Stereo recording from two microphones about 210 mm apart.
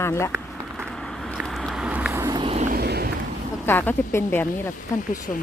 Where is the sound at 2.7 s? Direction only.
50° right (ahead or behind).